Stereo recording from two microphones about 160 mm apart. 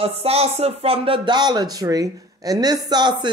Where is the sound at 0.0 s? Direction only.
40° right (ahead or behind).